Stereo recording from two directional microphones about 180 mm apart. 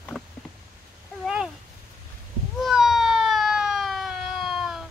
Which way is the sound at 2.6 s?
Centre (ahead or behind).